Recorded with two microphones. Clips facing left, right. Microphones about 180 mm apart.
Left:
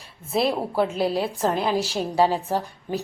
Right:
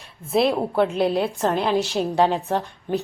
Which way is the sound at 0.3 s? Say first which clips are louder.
Right 3 dB; centre (ahead or behind).